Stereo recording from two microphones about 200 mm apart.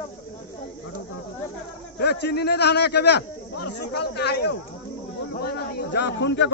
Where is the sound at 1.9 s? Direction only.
55° left (ahead or behind).